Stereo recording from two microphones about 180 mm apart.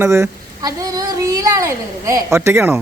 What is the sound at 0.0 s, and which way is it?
A woman's voice, 15° right (ahead or behind).